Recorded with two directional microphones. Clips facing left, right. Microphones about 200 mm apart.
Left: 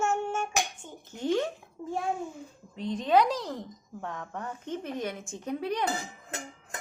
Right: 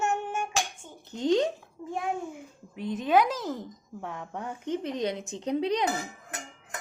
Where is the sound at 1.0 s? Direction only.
20° right (ahead or behind).